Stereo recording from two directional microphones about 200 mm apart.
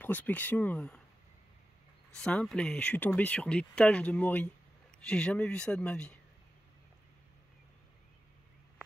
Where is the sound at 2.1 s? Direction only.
5° left (ahead or behind).